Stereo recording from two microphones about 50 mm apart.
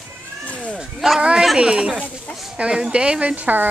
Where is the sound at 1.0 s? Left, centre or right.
Centre.